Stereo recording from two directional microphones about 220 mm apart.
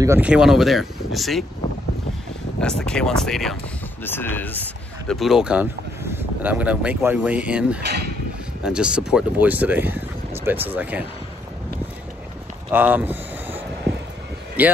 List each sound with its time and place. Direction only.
0.0 s speech: 10° right (ahead or behind)
2.6 s speech: 5° left (ahead or behind)
12.7 s speech: 10° right (ahead or behind)
14.6 s speech: 10° right (ahead or behind)